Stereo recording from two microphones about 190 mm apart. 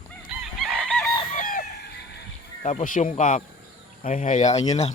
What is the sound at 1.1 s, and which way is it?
Fowl, 25° left (ahead or behind).